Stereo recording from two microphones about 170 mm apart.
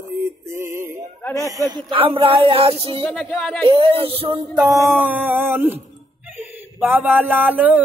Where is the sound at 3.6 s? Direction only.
30° right (ahead or behind).